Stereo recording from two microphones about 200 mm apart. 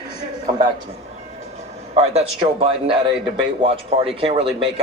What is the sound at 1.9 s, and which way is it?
Speech, 30° right (ahead or behind).